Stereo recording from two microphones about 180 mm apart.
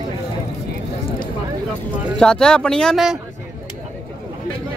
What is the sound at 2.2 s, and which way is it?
Speech, 5° left (ahead or behind).